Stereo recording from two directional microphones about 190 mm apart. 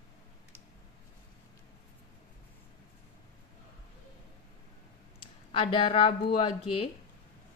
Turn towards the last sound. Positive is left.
turn(degrees=30)  # may be behind; listen again after turning